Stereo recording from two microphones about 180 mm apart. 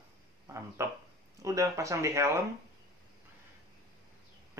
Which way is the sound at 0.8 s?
15° right (ahead or behind).